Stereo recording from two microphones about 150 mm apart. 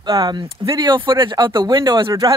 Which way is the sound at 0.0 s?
25° right (ahead or behind).